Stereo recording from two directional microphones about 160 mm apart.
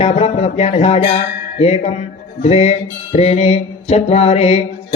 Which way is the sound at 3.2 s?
40° left (ahead or behind).